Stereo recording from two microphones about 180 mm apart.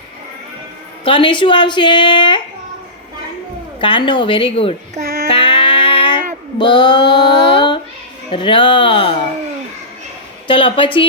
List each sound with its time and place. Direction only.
1.0 s a woman's voice: 25° left (ahead or behind)
3.8 s a woman's voice: 25° left (ahead or behind)
5.3 s music: 30° left (ahead or behind)
6.6 s a woman's voice: 25° left (ahead or behind)
7.1 s music: 25° left (ahead or behind)
8.3 s a woman's voice: 30° left (ahead or behind)
10.4 s a woman's voice: 30° left (ahead or behind)